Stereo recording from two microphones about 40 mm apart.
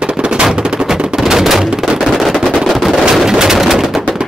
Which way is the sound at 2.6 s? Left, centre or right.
Centre.